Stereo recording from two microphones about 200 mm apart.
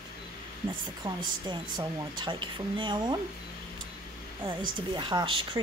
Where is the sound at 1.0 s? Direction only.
20° right (ahead or behind).